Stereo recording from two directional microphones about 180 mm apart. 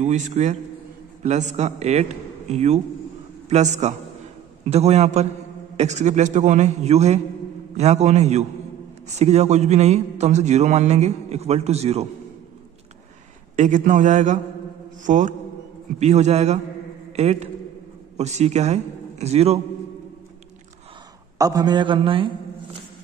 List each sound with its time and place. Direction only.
0.0 s a man's voice: 40° right (ahead or behind)
13.6 s a man's voice: 45° right (ahead or behind)
21.4 s a man's voice: 20° right (ahead or behind)